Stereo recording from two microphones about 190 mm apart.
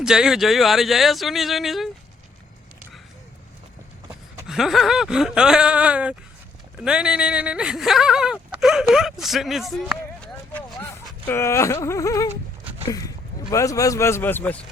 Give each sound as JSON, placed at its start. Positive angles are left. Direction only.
{"t": 0.0, "sound": "speech", "side_deg": -5}
{"t": 4.1, "sound": "a sound", "side_deg": 0}
{"t": 6.8, "sound": "speech", "side_deg": -5}